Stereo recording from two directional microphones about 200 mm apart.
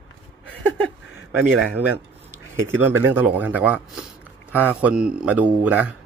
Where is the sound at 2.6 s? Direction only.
10° right (ahead or behind).